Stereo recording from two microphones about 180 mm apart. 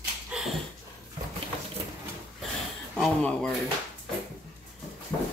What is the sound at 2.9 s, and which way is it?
Speech, 5° left (ahead or behind).